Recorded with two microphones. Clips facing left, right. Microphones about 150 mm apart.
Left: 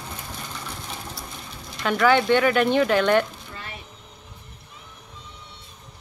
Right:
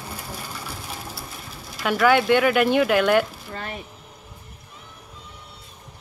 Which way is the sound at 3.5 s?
45° right (ahead or behind).